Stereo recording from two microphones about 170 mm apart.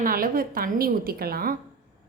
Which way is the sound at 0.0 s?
60° right (ahead or behind).